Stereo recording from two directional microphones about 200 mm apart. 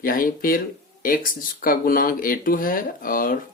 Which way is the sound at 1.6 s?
45° left (ahead or behind).